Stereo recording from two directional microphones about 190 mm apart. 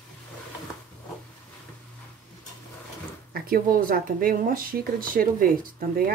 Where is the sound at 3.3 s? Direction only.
50° right (ahead or behind).